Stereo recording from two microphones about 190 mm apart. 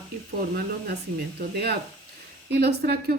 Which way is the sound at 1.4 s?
55° right (ahead or behind).